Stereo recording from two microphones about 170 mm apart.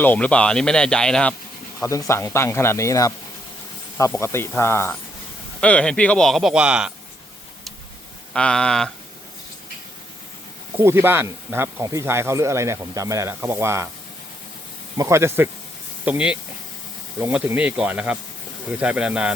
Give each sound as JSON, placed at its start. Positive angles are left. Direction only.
{"t": 0.0, "sound": "speech", "side_deg": 10}
{"t": 1.8, "sound": "speech", "side_deg": 20}
{"t": 8.3, "sound": "speech", "side_deg": 5}
{"t": 10.8, "sound": "speech", "side_deg": -15}
{"t": 14.9, "sound": "speech", "side_deg": -15}